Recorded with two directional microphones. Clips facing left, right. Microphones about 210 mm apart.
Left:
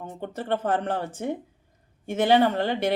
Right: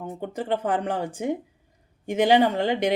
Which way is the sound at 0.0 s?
10° right (ahead or behind).